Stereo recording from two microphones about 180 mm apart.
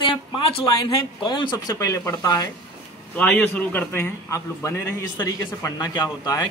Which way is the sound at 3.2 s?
10° left (ahead or behind).